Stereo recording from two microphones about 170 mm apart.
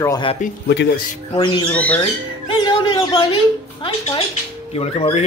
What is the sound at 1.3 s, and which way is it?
Speech, 25° left (ahead or behind).